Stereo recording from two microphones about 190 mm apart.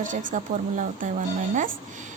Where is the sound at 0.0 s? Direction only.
45° right (ahead or behind).